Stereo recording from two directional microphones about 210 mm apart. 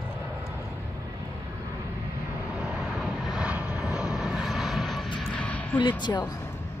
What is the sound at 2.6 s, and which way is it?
Vehicle, 5° right (ahead or behind).